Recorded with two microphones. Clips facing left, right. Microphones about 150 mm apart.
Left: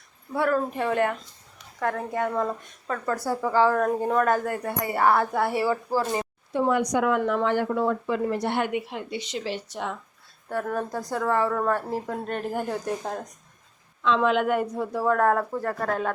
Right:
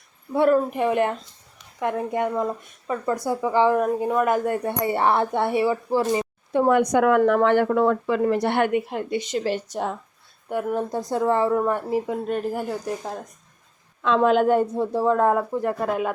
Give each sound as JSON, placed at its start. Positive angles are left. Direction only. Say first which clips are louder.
{"t": 0.3, "sound": "a woman's voice", "louder": "right 5 dB", "side_deg": -20}
{"t": 6.5, "sound": "speech", "louder": "right 5 dB", "side_deg": -60}
{"t": 10.5, "sound": "speech", "louder": "right 3 dB", "side_deg": -15}
{"t": 11.6, "sound": "speech", "louder": "right 3 dB", "side_deg": -10}
{"t": 14.0, "sound": "speech", "louder": "right 4 dB", "side_deg": -45}